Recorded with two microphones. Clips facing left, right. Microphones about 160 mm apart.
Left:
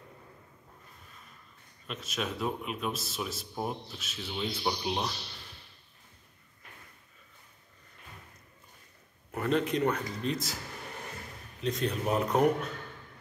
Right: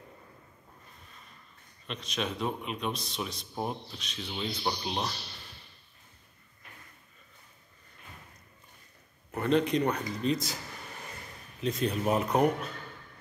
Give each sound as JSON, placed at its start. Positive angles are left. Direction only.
{"t": 1.9, "sound": "speech", "side_deg": 5}
{"t": 9.3, "sound": "speech", "side_deg": 0}
{"t": 11.6, "sound": "speech", "side_deg": 0}